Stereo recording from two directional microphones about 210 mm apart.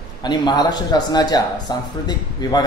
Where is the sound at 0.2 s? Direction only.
20° left (ahead or behind).